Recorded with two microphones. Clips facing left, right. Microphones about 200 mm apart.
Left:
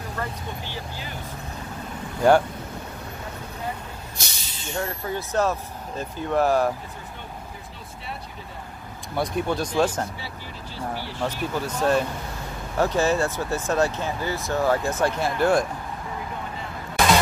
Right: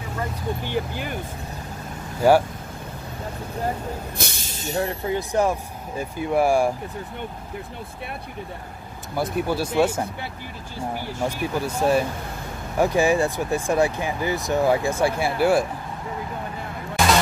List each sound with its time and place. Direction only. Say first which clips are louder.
0.7 s speech: right 8 dB; 55° right (ahead or behind)
2.2 s speech: right 1 dB; 5° right (ahead or behind)
4.2 s speech: right 6 dB; 50° right (ahead or behind)
4.8 s speech: right 4 dB; 15° right (ahead or behind)
9.1 s speech: right 1 dB; 5° right (ahead or behind)
11.2 s speech: right 2 dB; 10° right (ahead or behind)